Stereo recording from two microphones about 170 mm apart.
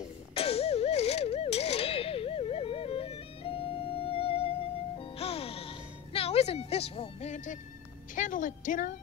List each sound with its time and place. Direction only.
0.3 s music: 35° left (ahead or behind)
8.1 s a woman's voice: 50° left (ahead or behind)